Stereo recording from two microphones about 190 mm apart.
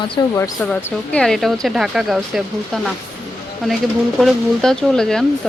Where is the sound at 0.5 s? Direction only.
5° left (ahead or behind).